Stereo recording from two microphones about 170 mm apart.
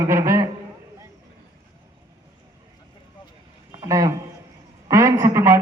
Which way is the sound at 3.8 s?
20° right (ahead or behind).